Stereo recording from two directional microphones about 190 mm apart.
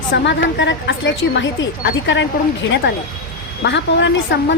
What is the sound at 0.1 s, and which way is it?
A woman's voice, 70° left (ahead or behind).